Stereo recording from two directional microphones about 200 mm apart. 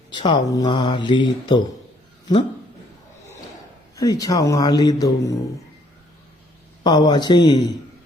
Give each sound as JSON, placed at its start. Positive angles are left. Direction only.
{"t": 0.1, "sound": "mantra", "side_deg": 25}
{"t": 3.9, "sound": "speech", "side_deg": 15}
{"t": 6.8, "sound": "mantra", "side_deg": 20}